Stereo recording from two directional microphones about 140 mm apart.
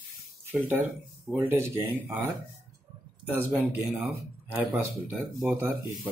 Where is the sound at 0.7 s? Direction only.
10° right (ahead or behind).